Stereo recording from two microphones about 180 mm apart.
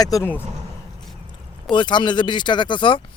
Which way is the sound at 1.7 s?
25° left (ahead or behind).